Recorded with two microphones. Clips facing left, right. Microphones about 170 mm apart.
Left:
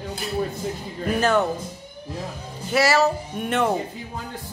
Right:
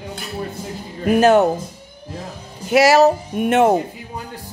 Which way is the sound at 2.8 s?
40° right (ahead or behind).